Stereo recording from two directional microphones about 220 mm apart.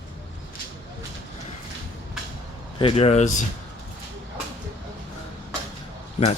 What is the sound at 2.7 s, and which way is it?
Speech, 25° left (ahead or behind).